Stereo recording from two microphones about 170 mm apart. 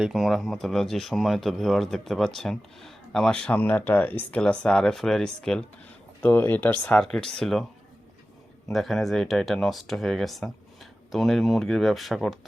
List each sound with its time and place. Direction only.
0.0 s speech: centre (ahead or behind)
8.6 s speech: centre (ahead or behind)